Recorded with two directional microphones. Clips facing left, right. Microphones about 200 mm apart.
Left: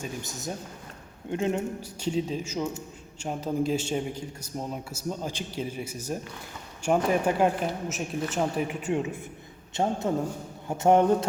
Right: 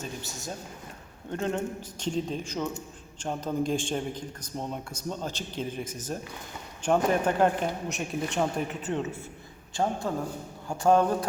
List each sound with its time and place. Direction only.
0.0 s a man's voice: 15° left (ahead or behind)
9.7 s a man's voice: 20° left (ahead or behind)